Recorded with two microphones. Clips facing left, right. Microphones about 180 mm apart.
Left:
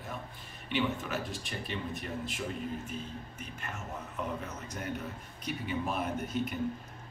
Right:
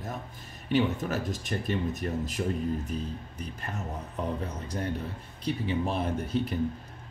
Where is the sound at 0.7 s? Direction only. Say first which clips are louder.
Right 6 dB; 40° right (ahead or behind).